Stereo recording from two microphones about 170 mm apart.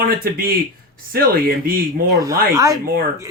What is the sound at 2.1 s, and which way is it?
Speech, 20° right (ahead or behind).